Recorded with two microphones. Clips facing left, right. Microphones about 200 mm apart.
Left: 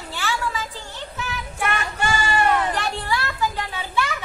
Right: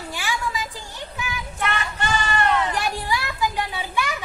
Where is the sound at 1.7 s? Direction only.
10° left (ahead or behind).